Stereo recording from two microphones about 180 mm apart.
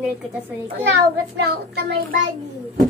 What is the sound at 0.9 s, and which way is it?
A child's voice, 65° right (ahead or behind).